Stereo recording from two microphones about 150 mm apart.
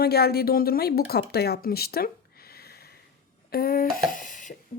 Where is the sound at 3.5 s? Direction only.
85° left; by 4.5 s 60° left (ahead or behind).